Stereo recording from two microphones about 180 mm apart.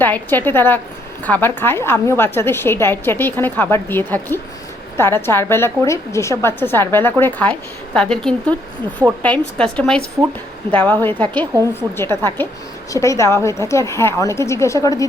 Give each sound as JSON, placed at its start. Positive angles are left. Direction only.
{"t": 0.0, "sound": "a woman's voice", "side_deg": 10}
{"t": 11.5, "sound": "a woman's voice", "side_deg": -10}
{"t": 11.9, "sound": "a woman's voice", "side_deg": 15}